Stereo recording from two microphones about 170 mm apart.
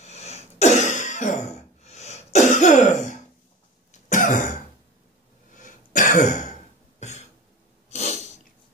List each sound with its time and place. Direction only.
0.0 s cough: 40° left (ahead or behind)
4.1 s throat clearing: 50° left (ahead or behind)
7.9 s a sound: 40° left (ahead or behind)